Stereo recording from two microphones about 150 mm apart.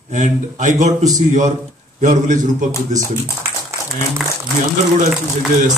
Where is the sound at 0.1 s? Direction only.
55° right (ahead or behind).